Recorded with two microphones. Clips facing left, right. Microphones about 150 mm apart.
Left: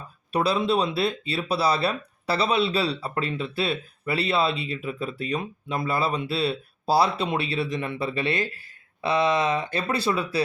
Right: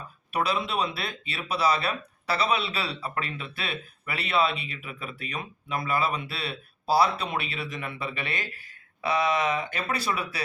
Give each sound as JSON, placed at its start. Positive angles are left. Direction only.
{"t": 0.3, "sound": "speech", "side_deg": 30}